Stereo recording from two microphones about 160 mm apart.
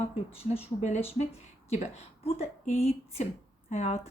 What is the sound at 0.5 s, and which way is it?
A woman's voice, 40° left (ahead or behind).